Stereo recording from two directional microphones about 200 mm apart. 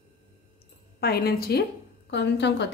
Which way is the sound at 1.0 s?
50° left (ahead or behind).